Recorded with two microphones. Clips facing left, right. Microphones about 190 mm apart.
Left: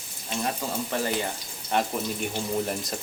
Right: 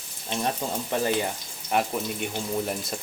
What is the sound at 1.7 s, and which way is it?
Speech, 5° right (ahead or behind).